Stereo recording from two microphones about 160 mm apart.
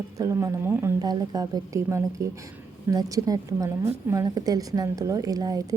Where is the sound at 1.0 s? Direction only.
25° right (ahead or behind).